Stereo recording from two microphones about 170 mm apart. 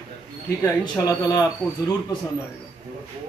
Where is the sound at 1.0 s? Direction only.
20° left (ahead or behind).